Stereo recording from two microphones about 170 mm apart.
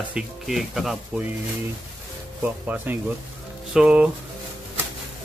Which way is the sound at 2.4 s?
10° right (ahead or behind).